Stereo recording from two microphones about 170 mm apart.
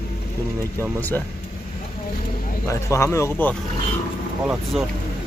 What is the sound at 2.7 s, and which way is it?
Speech, 15° left (ahead or behind).